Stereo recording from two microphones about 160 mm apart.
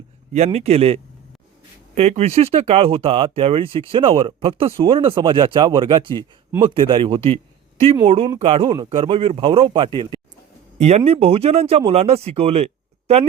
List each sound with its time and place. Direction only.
0.3 s speech: 40° right (ahead or behind)
2.0 s speech: 40° right (ahead or behind)
10.8 s speech: 45° right (ahead or behind)